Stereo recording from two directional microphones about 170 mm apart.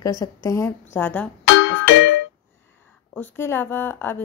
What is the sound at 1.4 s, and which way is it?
Music, 90° left.